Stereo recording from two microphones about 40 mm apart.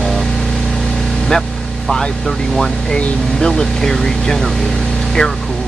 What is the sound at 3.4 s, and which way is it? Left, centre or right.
Speech, centre.